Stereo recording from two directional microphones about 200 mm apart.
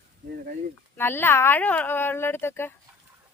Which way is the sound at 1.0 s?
10° left (ahead or behind).